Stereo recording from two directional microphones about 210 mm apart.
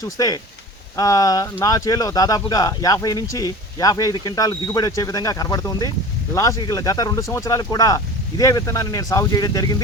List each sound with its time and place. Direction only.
0.0 s speech: 15° left (ahead or behind)